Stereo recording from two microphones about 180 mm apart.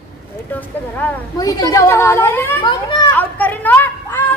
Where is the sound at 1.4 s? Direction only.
20° left (ahead or behind).